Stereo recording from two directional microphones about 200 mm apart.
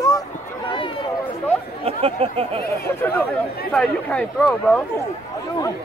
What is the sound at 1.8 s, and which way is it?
Speech, 30° right (ahead or behind).